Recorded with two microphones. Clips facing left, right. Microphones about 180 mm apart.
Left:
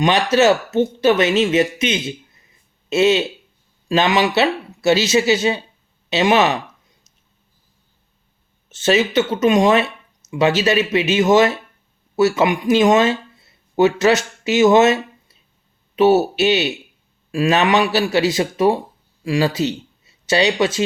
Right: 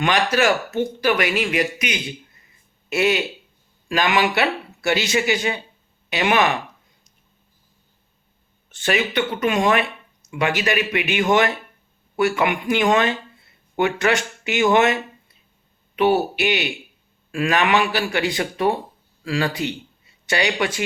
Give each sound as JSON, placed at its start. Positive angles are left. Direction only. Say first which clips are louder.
{"t": 0.0, "sound": "speech", "louder": "left 5 dB", "side_deg": 20}
{"t": 8.7, "sound": "speech", "louder": "left 6 dB", "side_deg": 20}
{"t": 13.4, "sound": "a sound", "louder": "left 6 dB", "side_deg": 20}
{"t": 14.4, "sound": "speech", "louder": "left 5 dB", "side_deg": 20}
{"t": 16.0, "sound": "speech", "louder": "left 5 dB", "side_deg": 25}